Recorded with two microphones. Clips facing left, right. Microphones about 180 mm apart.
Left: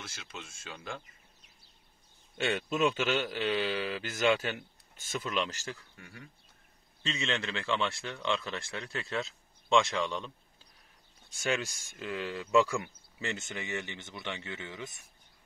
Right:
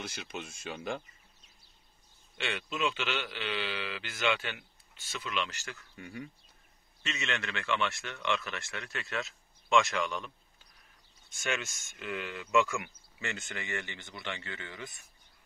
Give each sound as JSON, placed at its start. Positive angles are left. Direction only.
{"t": 0.0, "sound": "speech", "side_deg": -15}
{"t": 2.3, "sound": "a man's voice", "side_deg": 45}
{"t": 5.9, "sound": "speech", "side_deg": -20}
{"t": 7.0, "sound": "speech", "side_deg": 30}